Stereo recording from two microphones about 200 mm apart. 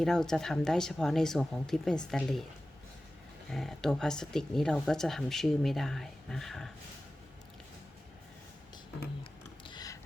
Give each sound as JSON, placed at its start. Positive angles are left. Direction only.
{"t": 0.0, "sound": "speech", "side_deg": 0}
{"t": 3.5, "sound": "speech", "side_deg": 0}
{"t": 9.6, "sound": "a sound", "side_deg": 20}